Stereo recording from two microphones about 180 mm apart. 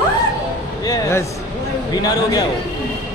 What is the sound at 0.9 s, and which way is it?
A man's voice, 15° left (ahead or behind).